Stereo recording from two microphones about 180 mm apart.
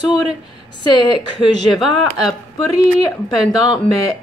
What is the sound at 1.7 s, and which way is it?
Speech, centre (ahead or behind).